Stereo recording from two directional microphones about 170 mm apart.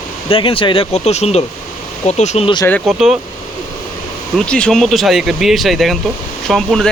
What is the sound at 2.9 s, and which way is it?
Speech, 5° right (ahead or behind).